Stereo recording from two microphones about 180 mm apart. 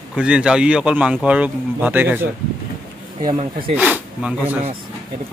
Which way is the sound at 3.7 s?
5° right (ahead or behind).